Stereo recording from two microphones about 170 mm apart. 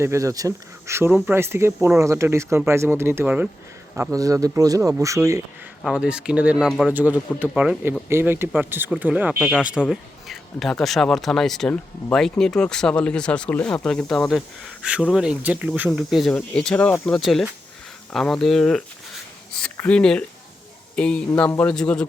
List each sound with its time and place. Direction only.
0.0 s speech: 15° right (ahead or behind)
5.8 s speech: 5° right (ahead or behind)